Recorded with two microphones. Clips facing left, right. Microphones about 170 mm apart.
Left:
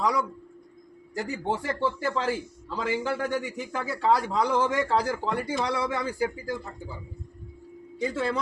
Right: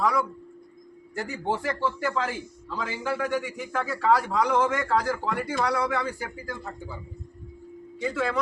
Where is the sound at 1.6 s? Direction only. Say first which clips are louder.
Even; 30° left (ahead or behind).